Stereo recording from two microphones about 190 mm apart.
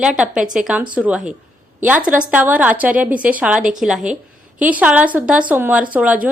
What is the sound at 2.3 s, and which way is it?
A woman's voice, 10° right (ahead or behind).